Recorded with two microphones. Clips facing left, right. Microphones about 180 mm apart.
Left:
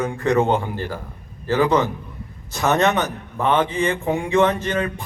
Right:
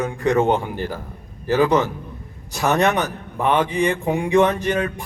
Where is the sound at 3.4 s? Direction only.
15° right (ahead or behind).